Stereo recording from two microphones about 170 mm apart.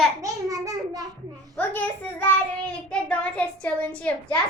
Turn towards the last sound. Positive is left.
turn(degrees=10)  # may be behind; listen again after turning